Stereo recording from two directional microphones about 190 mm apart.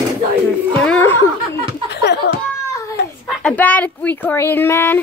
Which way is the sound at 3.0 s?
60° left (ahead or behind).